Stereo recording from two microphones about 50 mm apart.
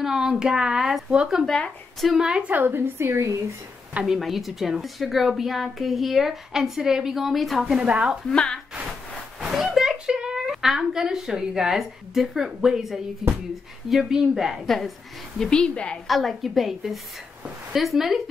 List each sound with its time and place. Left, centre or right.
0.0 s a woman's voice: centre
2.4 s a woman's voice: right
3.0 s speech: right
4.0 s a woman's voice: centre
7.7 s speech: right
8.3 s a woman's voice: centre
9.4 s a sound: centre
10.5 s a sound: centre
10.8 s a woman's voice: centre
15.3 s a woman's voice: centre
16.1 s a woman's voice: centre